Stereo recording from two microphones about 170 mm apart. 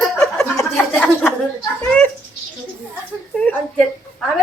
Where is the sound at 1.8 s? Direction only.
10° left (ahead or behind).